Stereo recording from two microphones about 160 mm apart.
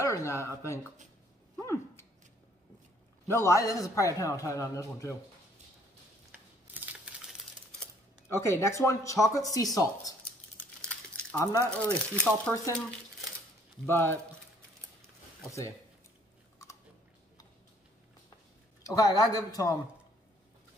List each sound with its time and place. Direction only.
0.0 s a man's voice: 20° left (ahead or behind)
3.3 s a man's voice: 15° left (ahead or behind)
6.7 s a sound: 10° right (ahead or behind)
8.3 s a man's voice: 15° left (ahead or behind)
11.3 s a man's voice: 20° left (ahead or behind)
11.7 s speech: 5° left (ahead or behind)
13.8 s speech: 15° left (ahead or behind)
18.8 s a man's voice: 20° left (ahead or behind)